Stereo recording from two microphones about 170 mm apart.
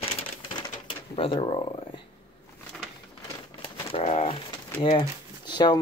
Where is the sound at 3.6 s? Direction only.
35° left (ahead or behind).